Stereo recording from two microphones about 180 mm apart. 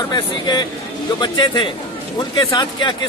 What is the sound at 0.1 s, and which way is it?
Speech, 25° left (ahead or behind).